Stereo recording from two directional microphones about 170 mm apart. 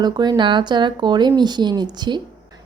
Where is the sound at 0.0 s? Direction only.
25° right (ahead or behind).